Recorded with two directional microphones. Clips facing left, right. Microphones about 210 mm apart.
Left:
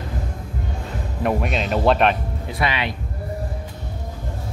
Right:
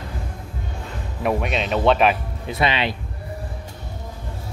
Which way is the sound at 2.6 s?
25° right (ahead or behind).